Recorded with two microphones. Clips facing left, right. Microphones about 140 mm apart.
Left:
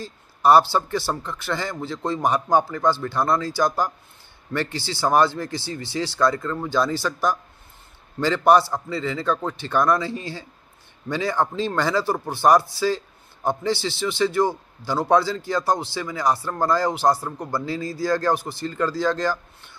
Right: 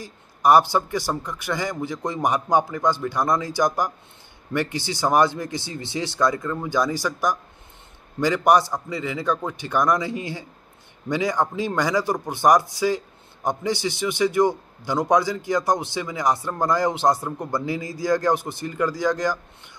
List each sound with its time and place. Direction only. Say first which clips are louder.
0.0 s speech: left 1 dB; 15° right (ahead or behind)